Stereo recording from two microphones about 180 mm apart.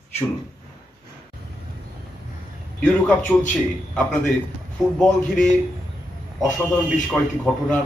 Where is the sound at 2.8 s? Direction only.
10° left (ahead or behind).